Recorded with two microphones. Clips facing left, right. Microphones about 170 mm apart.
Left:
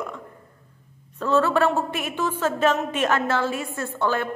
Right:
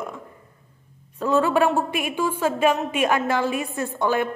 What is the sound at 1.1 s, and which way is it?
A woman's voice, 15° right (ahead or behind).